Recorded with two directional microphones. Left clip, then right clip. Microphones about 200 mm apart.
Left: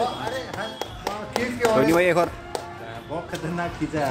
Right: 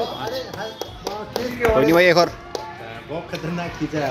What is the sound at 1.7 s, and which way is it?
Speech, 5° right (ahead or behind).